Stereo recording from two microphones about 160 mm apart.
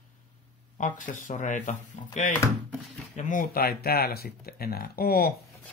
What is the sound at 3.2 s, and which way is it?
Speech, 55° left (ahead or behind).